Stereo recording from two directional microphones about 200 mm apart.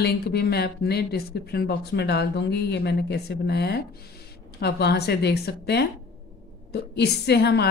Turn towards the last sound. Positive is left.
turn(degrees=55)  # may be behind; listen again after turning